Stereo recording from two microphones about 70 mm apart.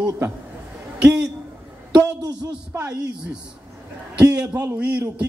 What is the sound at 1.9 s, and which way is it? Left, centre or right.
Speech, right.